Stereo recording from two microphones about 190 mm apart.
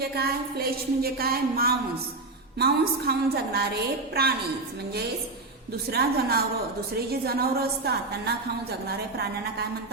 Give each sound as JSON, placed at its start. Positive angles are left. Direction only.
{"t": 0.0, "sound": "a woman's voice", "side_deg": -55}
{"t": 5.9, "sound": "a woman's voice", "side_deg": -55}